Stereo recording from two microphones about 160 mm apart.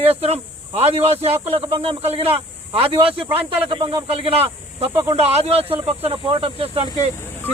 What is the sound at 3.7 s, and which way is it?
Speech, 30° right (ahead or behind).